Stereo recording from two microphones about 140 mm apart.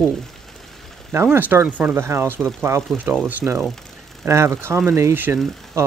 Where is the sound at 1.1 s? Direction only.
15° right (ahead or behind).